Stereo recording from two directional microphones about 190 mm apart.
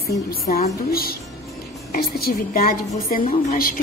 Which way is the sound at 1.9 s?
50° left (ahead or behind).